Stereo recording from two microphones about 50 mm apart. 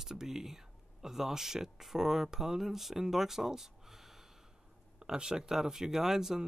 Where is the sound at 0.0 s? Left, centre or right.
Centre.